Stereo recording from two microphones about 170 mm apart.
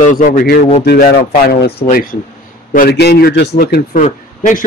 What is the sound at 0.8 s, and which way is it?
Speech, 70° left (ahead or behind).